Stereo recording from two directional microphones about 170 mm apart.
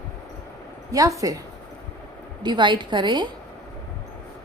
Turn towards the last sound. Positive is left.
turn(degrees=-25)  # may be behind; listen again after turning